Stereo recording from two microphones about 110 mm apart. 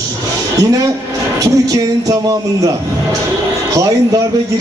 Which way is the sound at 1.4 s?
30° right (ahead or behind).